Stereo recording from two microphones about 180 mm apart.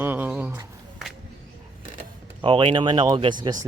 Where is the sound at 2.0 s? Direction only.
30° right (ahead or behind).